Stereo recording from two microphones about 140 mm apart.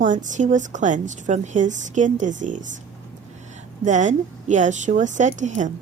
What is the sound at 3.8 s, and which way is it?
A woman's voice, 60° right (ahead or behind).